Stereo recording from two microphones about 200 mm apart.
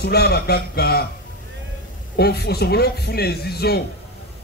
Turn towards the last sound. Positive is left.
turn(degrees=50)  # may be behind; listen again after turning